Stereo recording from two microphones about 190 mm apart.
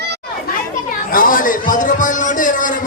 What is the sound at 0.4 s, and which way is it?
Chatter, 45° left (ahead or behind).